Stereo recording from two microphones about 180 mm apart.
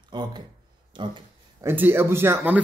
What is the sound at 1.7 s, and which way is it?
Speech, 15° right (ahead or behind).